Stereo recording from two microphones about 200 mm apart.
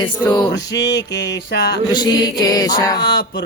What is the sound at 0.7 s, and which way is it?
Music, 60° left (ahead or behind).